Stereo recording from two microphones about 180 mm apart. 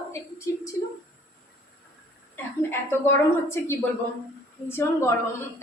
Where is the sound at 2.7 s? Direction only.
15° left (ahead or behind).